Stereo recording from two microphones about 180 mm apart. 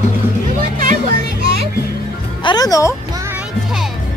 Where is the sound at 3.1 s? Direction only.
15° right (ahead or behind).